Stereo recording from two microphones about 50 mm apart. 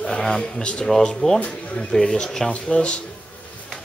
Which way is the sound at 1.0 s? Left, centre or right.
Centre.